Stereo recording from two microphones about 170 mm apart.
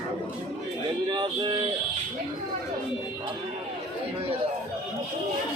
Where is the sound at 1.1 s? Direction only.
25° right (ahead or behind).